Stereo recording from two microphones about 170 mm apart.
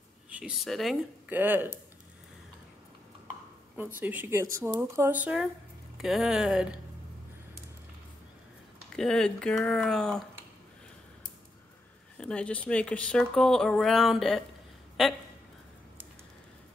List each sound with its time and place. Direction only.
0.3 s speech: 5° right (ahead or behind)
1.3 s speech: 10° right (ahead or behind)
3.7 s speech: 10° right (ahead or behind)
8.9 s speech: 5° left (ahead or behind)
12.2 s speech: 5° left (ahead or behind)